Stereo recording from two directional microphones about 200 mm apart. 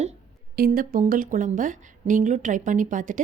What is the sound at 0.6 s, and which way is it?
Speech, 45° right (ahead or behind).